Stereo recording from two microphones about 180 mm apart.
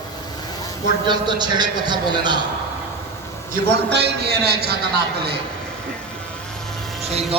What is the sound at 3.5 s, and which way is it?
A man's voice, 65° right (ahead or behind).